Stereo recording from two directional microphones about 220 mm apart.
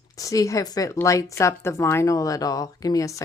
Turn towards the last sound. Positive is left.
turn(degrees=15)  # may be behind; listen again after turning